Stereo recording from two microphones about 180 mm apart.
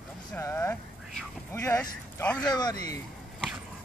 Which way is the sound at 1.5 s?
15° left (ahead or behind).